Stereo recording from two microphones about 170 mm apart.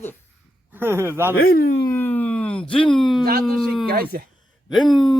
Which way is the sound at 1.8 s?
10° left (ahead or behind).